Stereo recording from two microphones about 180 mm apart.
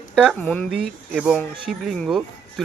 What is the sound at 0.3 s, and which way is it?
Speech, 10° left (ahead or behind).